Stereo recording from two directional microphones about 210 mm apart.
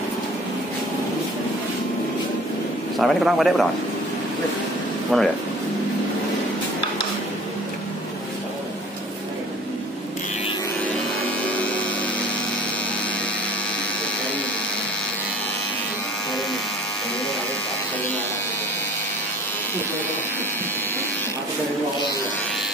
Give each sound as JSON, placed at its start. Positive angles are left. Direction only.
{"t": 3.0, "sound": "speech", "side_deg": 0}
{"t": 5.1, "sound": "speech", "side_deg": 0}
{"t": 11.4, "sound": "a sound", "side_deg": 5}